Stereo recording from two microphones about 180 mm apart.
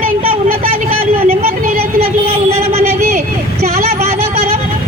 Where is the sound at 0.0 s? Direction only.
55° right (ahead or behind).